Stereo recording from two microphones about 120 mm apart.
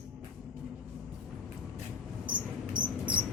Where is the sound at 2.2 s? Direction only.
40° right (ahead or behind).